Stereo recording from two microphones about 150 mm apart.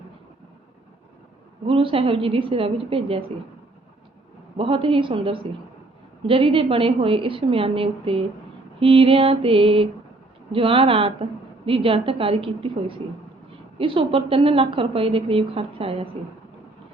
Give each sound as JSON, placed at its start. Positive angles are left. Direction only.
{"t": 1.6, "sound": "a woman's voice", "side_deg": -35}
{"t": 4.5, "sound": "a woman's voice", "side_deg": -35}
{"t": 13.7, "sound": "a woman's voice", "side_deg": -35}